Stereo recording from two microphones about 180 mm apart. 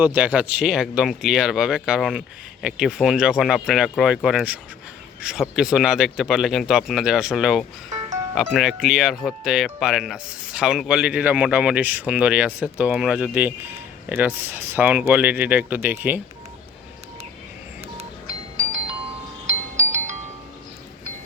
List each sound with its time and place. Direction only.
0.0 s speech: 10° right (ahead or behind)
19.5 s wind chime: 40° right (ahead or behind)